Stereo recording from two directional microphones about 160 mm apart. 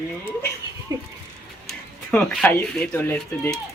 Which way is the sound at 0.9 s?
20° right (ahead or behind).